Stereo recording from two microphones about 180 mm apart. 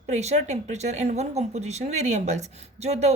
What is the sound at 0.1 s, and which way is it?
Speech, 40° right (ahead or behind).